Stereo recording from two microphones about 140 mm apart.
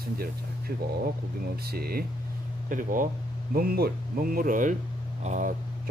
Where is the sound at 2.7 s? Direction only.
75° right (ahead or behind).